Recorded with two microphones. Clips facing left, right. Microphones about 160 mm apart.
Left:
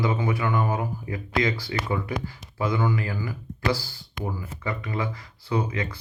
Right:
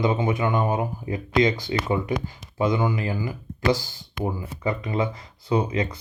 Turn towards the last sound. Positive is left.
turn(degrees=-20)  # may be behind; listen again after turning